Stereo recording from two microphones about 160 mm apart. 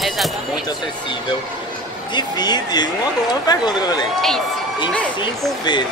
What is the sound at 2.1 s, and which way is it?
Speech, 25° left (ahead or behind).